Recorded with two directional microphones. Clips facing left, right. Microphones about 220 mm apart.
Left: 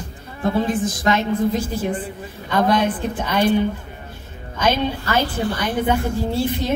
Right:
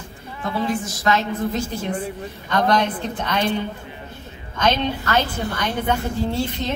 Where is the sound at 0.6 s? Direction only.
20° left (ahead or behind).